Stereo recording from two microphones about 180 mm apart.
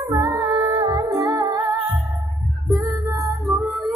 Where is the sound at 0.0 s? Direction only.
20° right (ahead or behind).